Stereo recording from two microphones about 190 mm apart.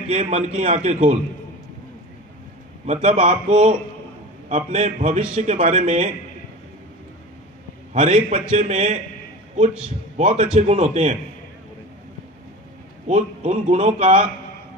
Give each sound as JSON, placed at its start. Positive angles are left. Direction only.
{"t": 0.1, "sound": "speech", "side_deg": -35}
{"t": 2.9, "sound": "speech", "side_deg": -35}
{"t": 7.9, "sound": "speech", "side_deg": -40}
{"t": 10.1, "sound": "speech", "side_deg": -40}
{"t": 13.1, "sound": "speech", "side_deg": -40}